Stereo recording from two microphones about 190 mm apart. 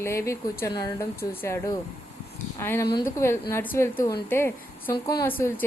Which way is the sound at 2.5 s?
15° left (ahead or behind).